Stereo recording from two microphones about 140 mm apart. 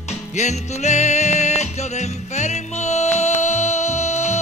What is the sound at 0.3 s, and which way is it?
Music, 55° left (ahead or behind).